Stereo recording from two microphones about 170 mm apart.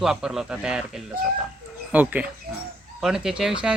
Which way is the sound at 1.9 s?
10° right (ahead or behind).